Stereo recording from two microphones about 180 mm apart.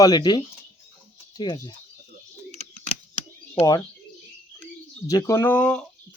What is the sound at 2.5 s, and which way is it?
Bird, 40° left (ahead or behind).